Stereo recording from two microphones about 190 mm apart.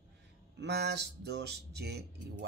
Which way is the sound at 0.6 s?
60° right (ahead or behind).